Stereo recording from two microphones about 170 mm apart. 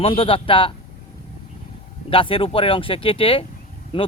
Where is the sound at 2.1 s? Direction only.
30° left (ahead or behind).